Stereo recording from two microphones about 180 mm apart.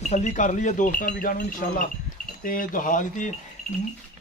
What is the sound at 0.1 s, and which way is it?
Speech, 45° left (ahead or behind).